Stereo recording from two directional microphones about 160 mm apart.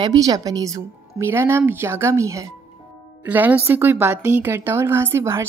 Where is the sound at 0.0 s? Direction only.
25° right (ahead or behind).